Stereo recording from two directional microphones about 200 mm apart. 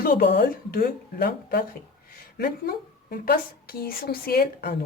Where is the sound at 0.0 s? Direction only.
50° left (ahead or behind).